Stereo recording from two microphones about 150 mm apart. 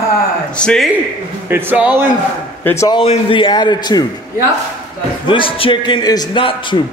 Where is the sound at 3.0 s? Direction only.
35° left (ahead or behind).